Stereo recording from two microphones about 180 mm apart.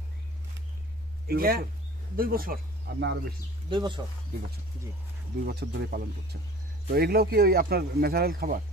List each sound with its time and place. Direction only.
1.2 s speech: 55° right (ahead or behind); by 3.3 s 75° right (ahead or behind)
3.7 s speech: 25° right (ahead or behind)
5.4 s speech: 60° right (ahead or behind)